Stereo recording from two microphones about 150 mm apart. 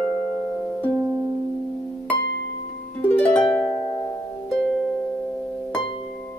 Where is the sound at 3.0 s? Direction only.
10° left (ahead or behind).